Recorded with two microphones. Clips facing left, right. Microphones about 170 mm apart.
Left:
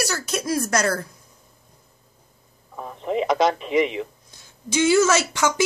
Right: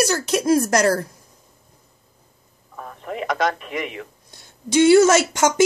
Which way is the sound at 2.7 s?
20° left (ahead or behind).